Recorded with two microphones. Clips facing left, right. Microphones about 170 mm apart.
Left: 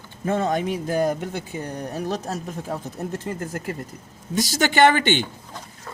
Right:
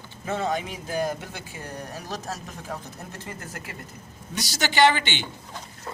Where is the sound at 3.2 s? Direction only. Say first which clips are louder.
Left 9 dB; 45° left (ahead or behind).